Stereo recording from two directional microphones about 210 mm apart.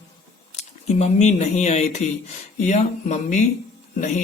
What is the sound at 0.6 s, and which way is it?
Speech, 30° left (ahead or behind).